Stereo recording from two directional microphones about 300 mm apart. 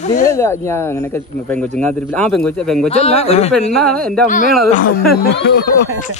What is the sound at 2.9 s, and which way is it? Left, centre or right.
Speech, left.